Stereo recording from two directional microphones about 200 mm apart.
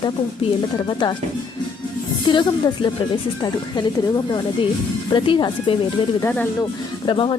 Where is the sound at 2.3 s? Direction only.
25° left (ahead or behind).